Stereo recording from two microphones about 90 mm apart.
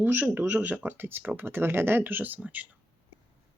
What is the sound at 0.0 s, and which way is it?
Speech, 20° right (ahead or behind).